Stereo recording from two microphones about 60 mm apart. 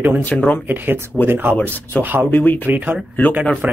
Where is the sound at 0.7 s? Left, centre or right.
Right.